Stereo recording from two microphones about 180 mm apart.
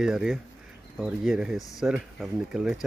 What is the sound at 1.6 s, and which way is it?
Speech, 20° left (ahead or behind).